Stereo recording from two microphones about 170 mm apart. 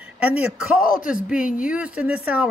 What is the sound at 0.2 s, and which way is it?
Speech, 10° right (ahead or behind).